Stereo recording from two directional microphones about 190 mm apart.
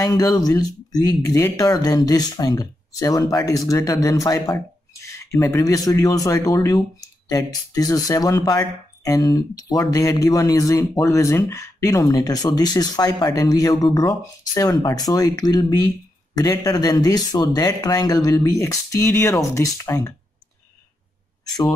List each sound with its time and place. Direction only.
0.0 s speech: 20° left (ahead or behind)